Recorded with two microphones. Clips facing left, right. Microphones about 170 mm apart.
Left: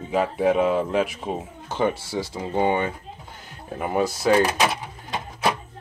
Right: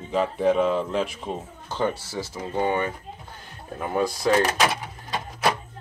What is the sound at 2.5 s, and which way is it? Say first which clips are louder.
Speech: left 2 dB; 20° left (ahead or behind).